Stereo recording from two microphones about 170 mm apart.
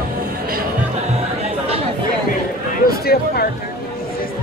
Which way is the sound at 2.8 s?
65° left (ahead or behind).